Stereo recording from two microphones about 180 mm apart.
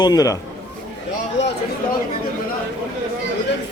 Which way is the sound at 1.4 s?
80° left.